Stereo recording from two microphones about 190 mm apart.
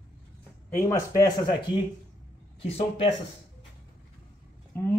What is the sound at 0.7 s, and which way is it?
Speech, 15° left (ahead or behind).